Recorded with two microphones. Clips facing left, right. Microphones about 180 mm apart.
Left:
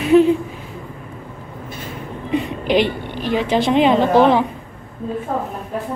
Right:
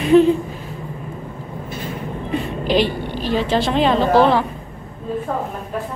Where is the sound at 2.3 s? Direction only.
20° left (ahead or behind).